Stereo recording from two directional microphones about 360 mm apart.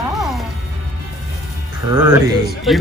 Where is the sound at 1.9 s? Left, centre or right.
Centre.